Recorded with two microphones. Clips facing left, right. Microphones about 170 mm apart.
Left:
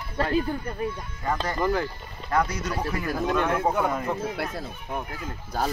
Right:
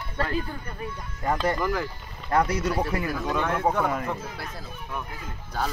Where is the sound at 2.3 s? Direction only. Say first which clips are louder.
Right 2 dB; 25° right (ahead or behind).